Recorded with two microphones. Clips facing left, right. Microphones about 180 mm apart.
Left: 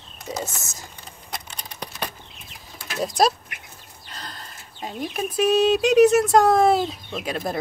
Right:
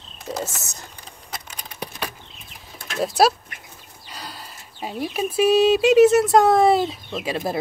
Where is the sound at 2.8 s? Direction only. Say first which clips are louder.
Right 2 dB; centre (ahead or behind).